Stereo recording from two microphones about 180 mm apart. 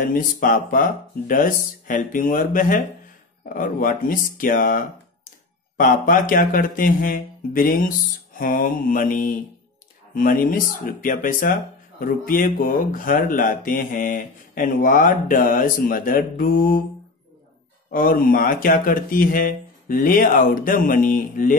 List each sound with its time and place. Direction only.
0.0 s speech: 50° left (ahead or behind)
17.8 s speech: 50° left (ahead or behind)